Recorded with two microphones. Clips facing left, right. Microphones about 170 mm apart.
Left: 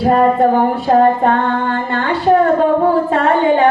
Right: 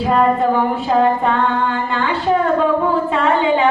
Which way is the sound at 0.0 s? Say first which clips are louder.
Left 3 dB; 50° left (ahead or behind).